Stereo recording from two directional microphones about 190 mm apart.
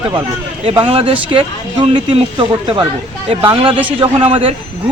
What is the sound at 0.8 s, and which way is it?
Speech, 30° right (ahead or behind).